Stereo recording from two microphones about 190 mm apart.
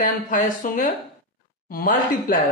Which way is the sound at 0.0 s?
40° left (ahead or behind).